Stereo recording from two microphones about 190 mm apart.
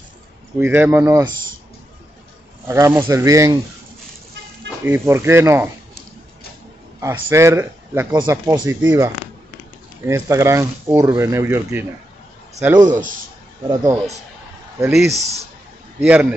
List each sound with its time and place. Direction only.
0.6 s speech: 10° right (ahead or behind)
2.7 s speech: 15° right (ahead or behind)
4.8 s speech: 10° right (ahead or behind)
7.0 s a man's voice: 15° right (ahead or behind)
12.9 s a man's voice: 45° right (ahead or behind)
13.7 s speech: 15° right (ahead or behind)
14.9 s speech: centre (ahead or behind)
15.1 s a man's voice: 35° right (ahead or behind)
16.0 s speech: 5° right (ahead or behind)